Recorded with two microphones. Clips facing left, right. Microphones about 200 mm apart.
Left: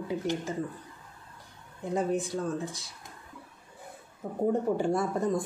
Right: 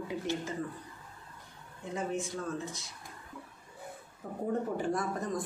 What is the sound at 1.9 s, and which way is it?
Speech, 35° left (ahead or behind).